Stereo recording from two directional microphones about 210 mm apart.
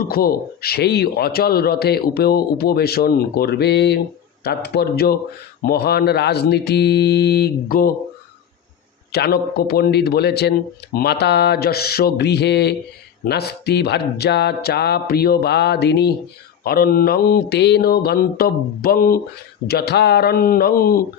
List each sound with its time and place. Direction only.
0.0 s a man's voice: 45° left (ahead or behind)
9.1 s a man's voice: 50° left (ahead or behind)